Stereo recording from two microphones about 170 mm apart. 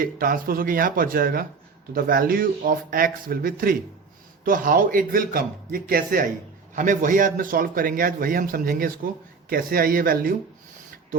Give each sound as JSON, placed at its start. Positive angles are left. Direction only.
{"t": 0.0, "sound": "a man's voice", "side_deg": -55}